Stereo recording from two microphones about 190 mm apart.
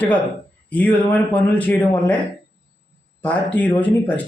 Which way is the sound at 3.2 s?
10° left (ahead or behind).